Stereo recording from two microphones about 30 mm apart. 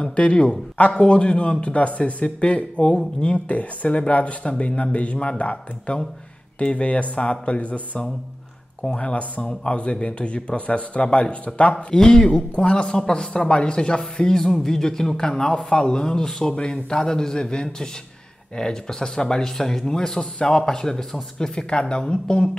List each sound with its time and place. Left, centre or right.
0.1 s speech: left
1.8 s speech: left
2.2 s speech: left
11.7 s speech: centre
12.4 s speech: left
13.3 s speech: left
14.4 s speech: centre; by 16.8 s left
16.9 s speech: centre
21.6 s speech: left